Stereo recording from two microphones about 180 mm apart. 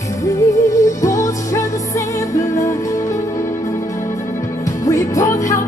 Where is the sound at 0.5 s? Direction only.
15° left (ahead or behind).